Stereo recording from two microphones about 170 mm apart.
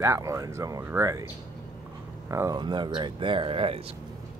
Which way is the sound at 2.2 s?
15° right (ahead or behind).